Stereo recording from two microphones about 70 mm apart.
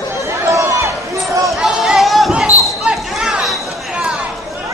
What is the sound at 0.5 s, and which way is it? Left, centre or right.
Run, right.